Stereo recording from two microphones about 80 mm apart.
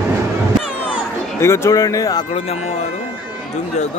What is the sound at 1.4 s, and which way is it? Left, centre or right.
Speech, left.